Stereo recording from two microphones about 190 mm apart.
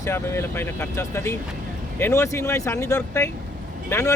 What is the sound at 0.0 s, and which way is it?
Speech, 15° left (ahead or behind).